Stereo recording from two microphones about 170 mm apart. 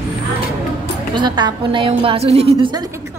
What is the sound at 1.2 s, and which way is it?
A woman's voice, 25° right (ahead or behind).